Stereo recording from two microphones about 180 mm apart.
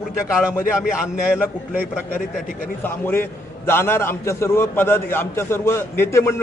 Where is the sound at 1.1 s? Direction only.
10° right (ahead or behind).